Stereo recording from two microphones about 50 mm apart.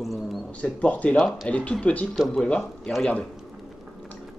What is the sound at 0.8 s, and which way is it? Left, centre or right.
Speech, left.